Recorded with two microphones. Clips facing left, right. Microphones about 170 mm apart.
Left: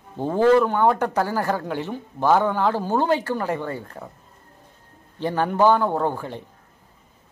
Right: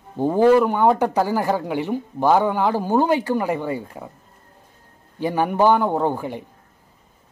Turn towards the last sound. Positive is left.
turn(degrees=-15)  # may be behind; listen again after turning